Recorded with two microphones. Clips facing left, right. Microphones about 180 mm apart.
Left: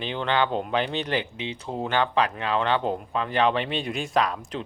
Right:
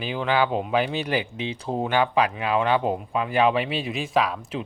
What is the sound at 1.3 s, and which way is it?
Speech, 25° left (ahead or behind).